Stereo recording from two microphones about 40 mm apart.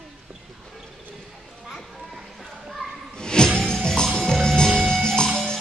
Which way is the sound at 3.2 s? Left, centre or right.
Centre.